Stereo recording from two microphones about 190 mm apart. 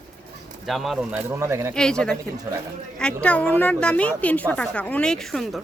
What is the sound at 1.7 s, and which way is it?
A woman's voice, 5° left (ahead or behind).